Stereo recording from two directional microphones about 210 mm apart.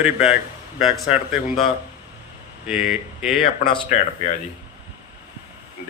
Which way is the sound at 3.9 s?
35° left (ahead or behind).